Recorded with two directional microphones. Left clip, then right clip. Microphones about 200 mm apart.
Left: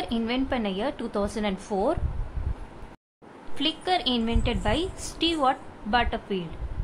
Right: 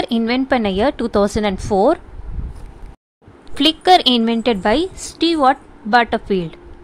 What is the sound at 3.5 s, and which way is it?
A woman's voice, 35° right (ahead or behind).